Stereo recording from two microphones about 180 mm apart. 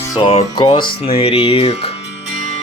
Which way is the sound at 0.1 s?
30° left (ahead or behind).